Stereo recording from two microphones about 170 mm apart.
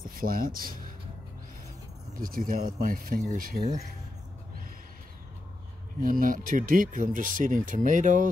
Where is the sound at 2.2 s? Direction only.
55° right (ahead or behind).